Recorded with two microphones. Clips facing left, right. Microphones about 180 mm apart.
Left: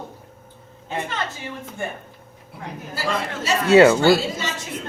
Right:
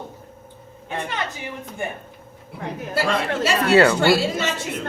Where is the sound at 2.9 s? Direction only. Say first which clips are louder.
Right 4 dB; 70° right (ahead or behind).